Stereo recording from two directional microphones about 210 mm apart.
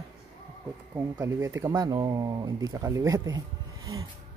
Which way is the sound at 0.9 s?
10° right (ahead or behind).